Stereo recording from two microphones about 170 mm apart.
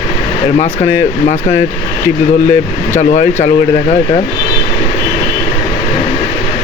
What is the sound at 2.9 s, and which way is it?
Speech, 45° left (ahead or behind).